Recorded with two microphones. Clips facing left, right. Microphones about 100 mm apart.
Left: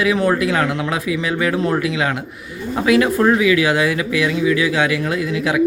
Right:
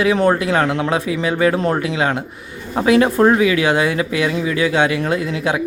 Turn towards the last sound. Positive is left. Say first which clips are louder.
# right 1 dB
turn(degrees=-30)  # may be behind; listen again after turning